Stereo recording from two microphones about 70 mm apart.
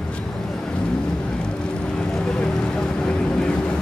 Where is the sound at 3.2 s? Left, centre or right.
Centre.